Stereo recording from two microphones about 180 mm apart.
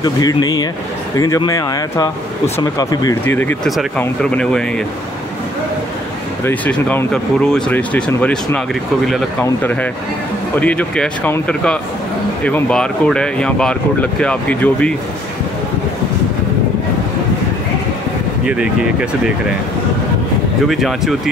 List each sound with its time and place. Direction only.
0.0 s speech: 20° left (ahead or behind); by 4.8 s 5° left (ahead or behind)
6.4 s speech: 10° left (ahead or behind)
18.4 s speech: 5° right (ahead or behind)
20.6 s speech: centre (ahead or behind)